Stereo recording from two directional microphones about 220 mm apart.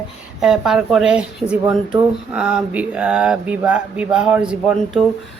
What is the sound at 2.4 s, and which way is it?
Speech, 5° right (ahead or behind).